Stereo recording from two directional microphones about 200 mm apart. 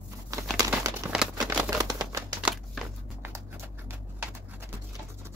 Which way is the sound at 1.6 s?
15° right (ahead or behind).